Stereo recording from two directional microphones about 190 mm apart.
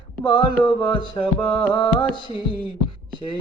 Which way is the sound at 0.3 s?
25° left (ahead or behind).